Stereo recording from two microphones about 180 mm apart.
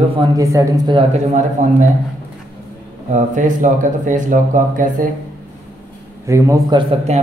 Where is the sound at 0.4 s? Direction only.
20° right (ahead or behind).